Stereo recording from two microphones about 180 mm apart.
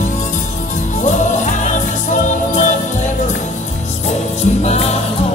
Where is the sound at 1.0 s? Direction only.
40° left (ahead or behind).